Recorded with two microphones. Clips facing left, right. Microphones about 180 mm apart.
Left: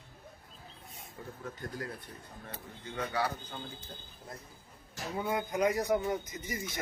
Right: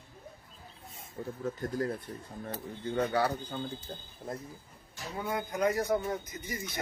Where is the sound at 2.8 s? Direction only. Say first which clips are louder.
Right 5 dB; 35° right (ahead or behind).